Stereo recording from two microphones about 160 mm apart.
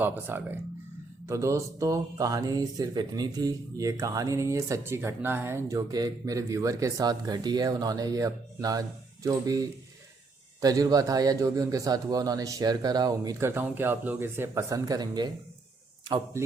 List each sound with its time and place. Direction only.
0.0 s speech: 10° right (ahead or behind)